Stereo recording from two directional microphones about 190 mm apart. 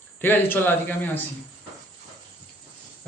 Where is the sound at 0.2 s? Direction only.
10° left (ahead or behind).